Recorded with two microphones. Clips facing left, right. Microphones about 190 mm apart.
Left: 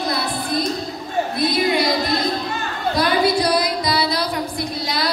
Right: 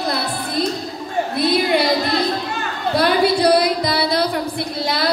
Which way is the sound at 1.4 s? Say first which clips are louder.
Right 3 dB; 60° right (ahead or behind).